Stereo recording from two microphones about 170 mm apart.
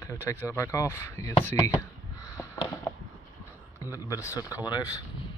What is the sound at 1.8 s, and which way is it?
Crow, 20° left (ahead or behind).